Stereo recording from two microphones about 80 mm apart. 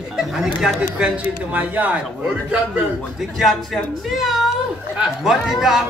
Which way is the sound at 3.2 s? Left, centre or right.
Centre.